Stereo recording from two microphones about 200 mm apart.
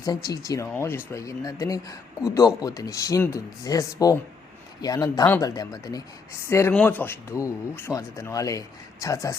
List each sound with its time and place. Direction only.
0.0 s speech: 20° left (ahead or behind)